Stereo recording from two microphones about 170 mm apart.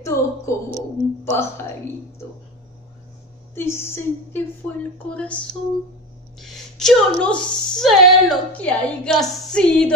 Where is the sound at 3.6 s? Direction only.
15° left (ahead or behind).